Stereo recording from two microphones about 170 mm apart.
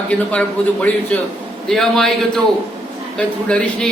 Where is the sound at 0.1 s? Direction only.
5° left (ahead or behind).